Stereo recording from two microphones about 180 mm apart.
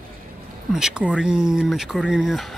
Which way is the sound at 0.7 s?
5° right (ahead or behind).